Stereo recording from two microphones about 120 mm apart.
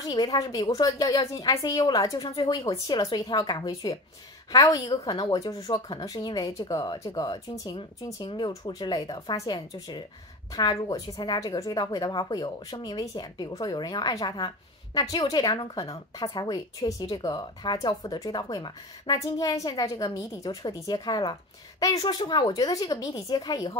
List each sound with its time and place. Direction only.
0.0 s speech: 30° left (ahead or behind)
7.7 s speech: 45° left (ahead or behind)